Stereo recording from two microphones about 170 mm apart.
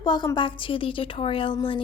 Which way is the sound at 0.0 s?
25° left (ahead or behind).